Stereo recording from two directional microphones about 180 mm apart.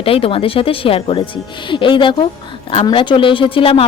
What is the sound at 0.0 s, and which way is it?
Speech, 30° left (ahead or behind).